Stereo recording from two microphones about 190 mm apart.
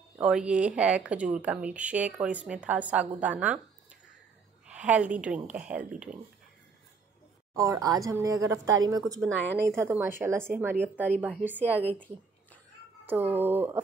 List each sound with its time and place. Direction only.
0.2 s speech: 5° right (ahead or behind)
4.6 s speech: 10° right (ahead or behind)
7.5 s a woman's voice: 15° right (ahead or behind)
9.4 s a woman's voice: 65° right (ahead or behind)
9.7 s speech: 15° right (ahead or behind)
13.0 s speech: 10° right (ahead or behind)